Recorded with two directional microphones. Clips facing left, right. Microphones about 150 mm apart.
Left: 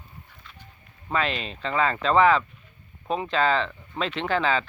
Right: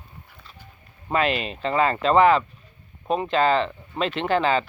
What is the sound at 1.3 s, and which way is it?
Speech, 5° right (ahead or behind).